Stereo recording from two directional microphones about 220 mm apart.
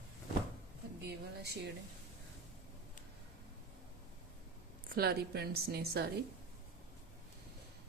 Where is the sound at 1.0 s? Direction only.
45° right (ahead or behind).